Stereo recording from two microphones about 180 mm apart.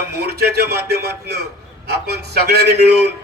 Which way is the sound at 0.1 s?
60° right (ahead or behind).